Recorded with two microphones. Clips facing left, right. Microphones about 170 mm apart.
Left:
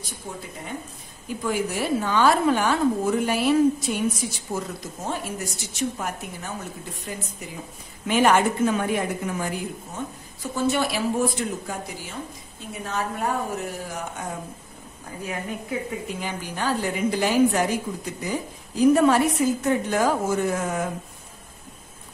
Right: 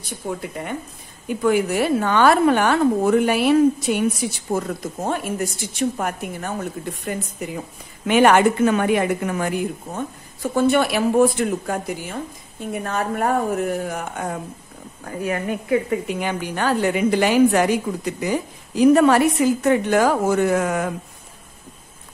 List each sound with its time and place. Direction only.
0.4 s a woman's voice: 65° right (ahead or behind)
8.1 s a woman's voice: 70° right (ahead or behind)